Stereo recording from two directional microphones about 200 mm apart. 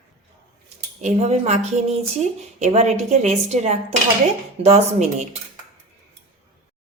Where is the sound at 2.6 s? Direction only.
35° right (ahead or behind).